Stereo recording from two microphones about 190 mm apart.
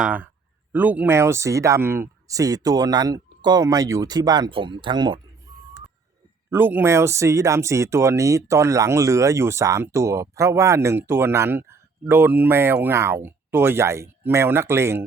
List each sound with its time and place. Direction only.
0.0 s speech: 5° right (ahead or behind); by 5.2 s 25° right (ahead or behind)
5.5 s a sound: 20° right (ahead or behind)
6.5 s speech: 10° right (ahead or behind)